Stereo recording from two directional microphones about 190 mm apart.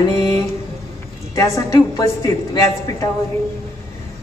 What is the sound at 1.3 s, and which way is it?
Speech, 15° left (ahead or behind).